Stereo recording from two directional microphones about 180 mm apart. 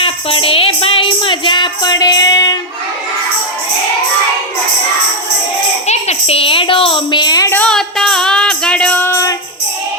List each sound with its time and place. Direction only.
0.0 s music: 30° left (ahead or behind)
5.9 s a sound: 35° left (ahead or behind); by 7.6 s 20° left (ahead or behind)
7.6 s music: 5° left (ahead or behind)